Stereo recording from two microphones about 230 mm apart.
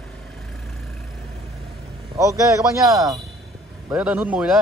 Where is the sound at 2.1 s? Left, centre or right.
Centre.